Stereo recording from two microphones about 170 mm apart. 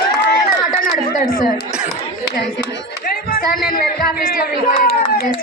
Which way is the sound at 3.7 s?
60° left (ahead or behind).